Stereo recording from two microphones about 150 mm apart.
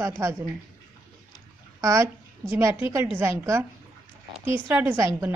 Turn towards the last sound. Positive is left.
turn(degrees=-15)  # may be behind; listen again after turning